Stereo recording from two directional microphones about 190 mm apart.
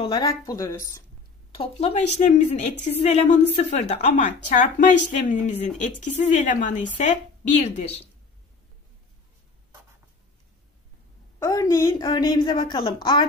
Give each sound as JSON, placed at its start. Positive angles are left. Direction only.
{"t": 0.0, "sound": "a woman's voice", "side_deg": 25}
{"t": 1.5, "sound": "a woman's voice", "side_deg": 30}
{"t": 11.3, "sound": "a woman's voice", "side_deg": 15}